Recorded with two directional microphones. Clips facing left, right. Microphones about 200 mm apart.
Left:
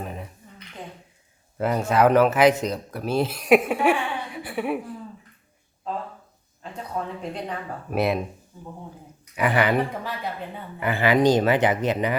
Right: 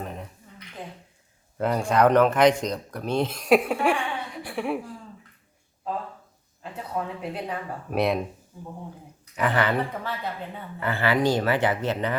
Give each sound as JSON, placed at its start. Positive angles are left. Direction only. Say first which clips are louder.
{"t": 0.0, "sound": "a sound", "louder": "left 1 dB", "side_deg": 5}
{"t": 1.5, "sound": "speech", "louder": "left 1 dB", "side_deg": 5}
{"t": 6.6, "sound": "speech", "louder": "even", "side_deg": -5}
{"t": 9.3, "sound": "speech", "louder": "left 2 dB", "side_deg": 10}